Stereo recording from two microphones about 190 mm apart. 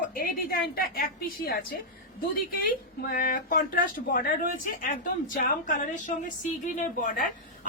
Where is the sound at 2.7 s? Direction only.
50° left (ahead or behind).